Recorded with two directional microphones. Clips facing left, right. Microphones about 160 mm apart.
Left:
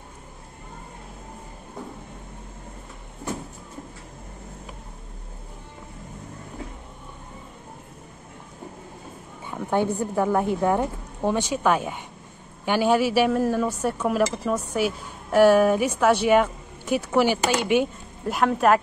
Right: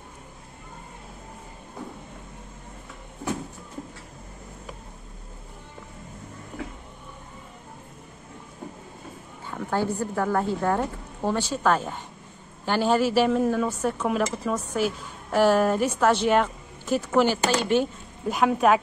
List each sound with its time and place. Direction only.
9.5 s speech: 20° left (ahead or behind)
18.2 s speech: 5° right (ahead or behind)